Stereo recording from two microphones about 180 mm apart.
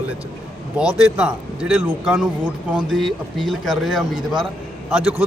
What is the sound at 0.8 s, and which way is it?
A man's voice, 5° right (ahead or behind).